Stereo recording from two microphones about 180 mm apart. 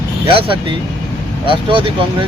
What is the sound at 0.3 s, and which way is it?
Speech, 30° right (ahead or behind).